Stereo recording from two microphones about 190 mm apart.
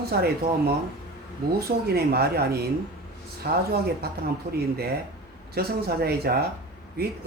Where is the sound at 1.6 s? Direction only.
55° right (ahead or behind).